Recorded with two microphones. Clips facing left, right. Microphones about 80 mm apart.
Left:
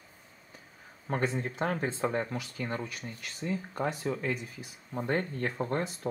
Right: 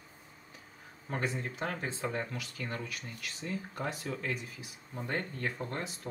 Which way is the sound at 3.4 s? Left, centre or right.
Left.